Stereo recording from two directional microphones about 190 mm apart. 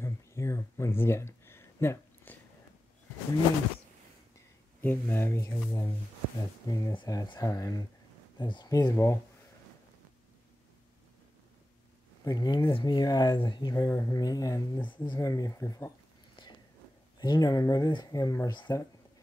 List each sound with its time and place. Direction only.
0.0 s a sound: 15° left (ahead or behind)
4.8 s speech: 10° left (ahead or behind)
12.3 s speech: 20° left (ahead or behind)
17.2 s speech: 20° left (ahead or behind)